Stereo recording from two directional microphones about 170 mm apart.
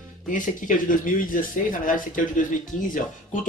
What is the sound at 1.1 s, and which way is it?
Speech, 55° left (ahead or behind).